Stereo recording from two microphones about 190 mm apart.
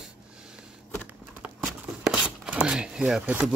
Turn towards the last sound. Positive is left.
turn(degrees=-5)  # may be behind; listen again after turning